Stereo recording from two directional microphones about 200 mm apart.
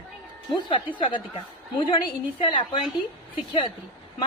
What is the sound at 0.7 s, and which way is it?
Speech, 25° left (ahead or behind).